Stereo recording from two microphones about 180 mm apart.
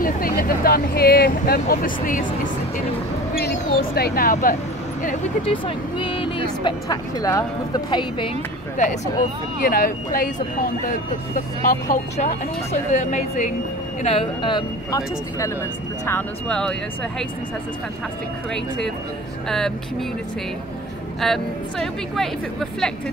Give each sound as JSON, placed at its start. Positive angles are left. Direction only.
{"t": 0.0, "sound": "speech", "side_deg": 50}
{"t": 3.3, "sound": "speech", "side_deg": 60}
{"t": 5.5, "sound": "speech", "side_deg": 30}
{"t": 8.7, "sound": "speech", "side_deg": 40}
{"t": 9.6, "sound": "speech", "side_deg": 55}
{"t": 14.0, "sound": "speech", "side_deg": 30}
{"t": 19.5, "sound": "speech", "side_deg": 5}
{"t": 21.2, "sound": "speech", "side_deg": 0}